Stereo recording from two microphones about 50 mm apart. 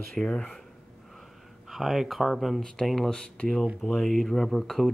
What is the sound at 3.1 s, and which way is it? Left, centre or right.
Speech, centre.